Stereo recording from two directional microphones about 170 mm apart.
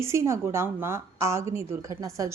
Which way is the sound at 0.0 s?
15° right (ahead or behind).